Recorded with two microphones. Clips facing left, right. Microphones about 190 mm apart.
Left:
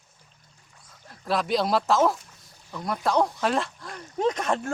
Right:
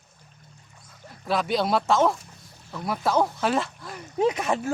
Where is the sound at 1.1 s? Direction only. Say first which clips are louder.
Even; centre (ahead or behind).